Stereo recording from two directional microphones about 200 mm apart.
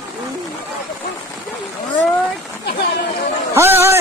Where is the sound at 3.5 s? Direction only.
10° right (ahead or behind).